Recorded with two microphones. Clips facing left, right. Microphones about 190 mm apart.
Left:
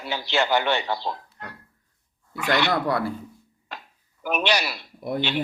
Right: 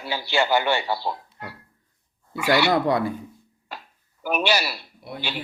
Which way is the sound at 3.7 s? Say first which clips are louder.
Right 1 dB; 5° right (ahead or behind).